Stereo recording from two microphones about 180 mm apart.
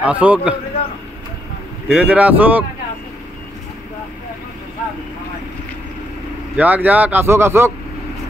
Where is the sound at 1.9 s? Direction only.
5° right (ahead or behind).